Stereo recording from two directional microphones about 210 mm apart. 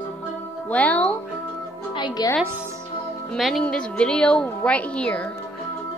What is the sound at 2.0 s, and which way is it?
Speech, 20° left (ahead or behind).